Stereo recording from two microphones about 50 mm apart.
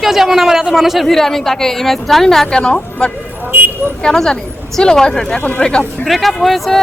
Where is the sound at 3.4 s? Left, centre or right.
Right.